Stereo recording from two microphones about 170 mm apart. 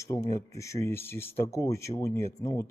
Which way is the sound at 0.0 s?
15° left (ahead or behind).